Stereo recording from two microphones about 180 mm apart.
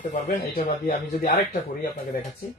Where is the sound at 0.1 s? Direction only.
45° left (ahead or behind).